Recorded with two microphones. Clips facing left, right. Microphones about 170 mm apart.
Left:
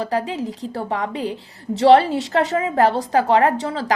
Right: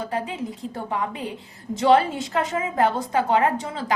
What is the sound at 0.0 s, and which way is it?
A woman's voice, 75° left (ahead or behind).